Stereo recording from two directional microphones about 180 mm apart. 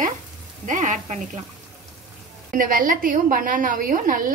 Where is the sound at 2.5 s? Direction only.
50° right (ahead or behind).